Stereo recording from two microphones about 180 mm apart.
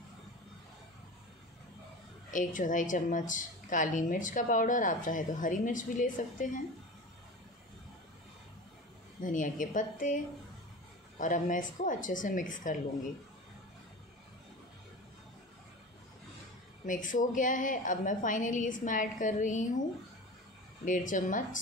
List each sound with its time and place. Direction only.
2.3 s a woman's voice: 45° left (ahead or behind)
9.2 s a woman's voice: 45° left (ahead or behind)
16.8 s a woman's voice: 45° left (ahead or behind)
20.8 s a woman's voice: 45° left (ahead or behind)